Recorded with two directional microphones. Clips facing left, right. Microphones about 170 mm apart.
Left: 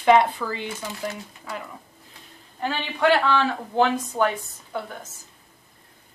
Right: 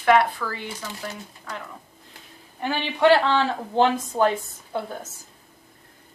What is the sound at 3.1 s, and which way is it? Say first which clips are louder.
A woman's voice: right 2 dB; 25° right (ahead or behind).